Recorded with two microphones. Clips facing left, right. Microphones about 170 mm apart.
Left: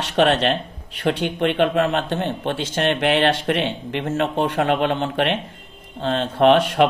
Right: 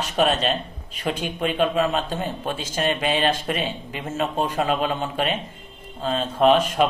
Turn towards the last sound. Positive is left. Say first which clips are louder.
# left 3 dB
turn(degrees=70)  # may be behind; listen again after turning